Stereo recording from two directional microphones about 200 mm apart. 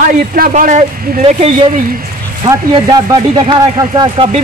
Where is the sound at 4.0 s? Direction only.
25° right (ahead or behind).